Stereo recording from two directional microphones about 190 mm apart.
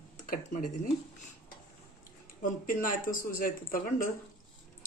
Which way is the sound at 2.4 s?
45° left (ahead or behind).